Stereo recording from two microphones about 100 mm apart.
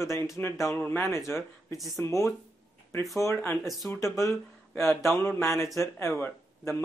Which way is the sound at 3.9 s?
30° left (ahead or behind).